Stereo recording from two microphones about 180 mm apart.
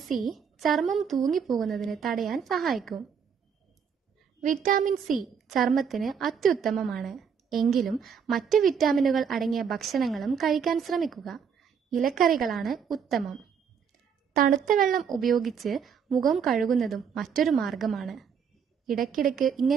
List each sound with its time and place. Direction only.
0.0 s a woman's voice: centre (ahead or behind)
4.4 s a child's voice: 45° right (ahead or behind)
5.0 s a woman's voice: centre (ahead or behind)
14.8 s a child's voice: 45° right (ahead or behind)
15.0 s a woman's voice: centre (ahead or behind)